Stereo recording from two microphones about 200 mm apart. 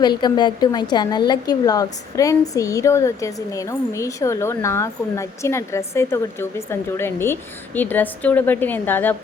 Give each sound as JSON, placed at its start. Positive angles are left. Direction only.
{"t": 0.0, "sound": "a woman's voice", "side_deg": 20}